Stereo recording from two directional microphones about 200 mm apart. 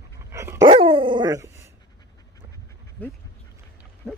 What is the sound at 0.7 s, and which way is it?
Dog, 25° right (ahead or behind).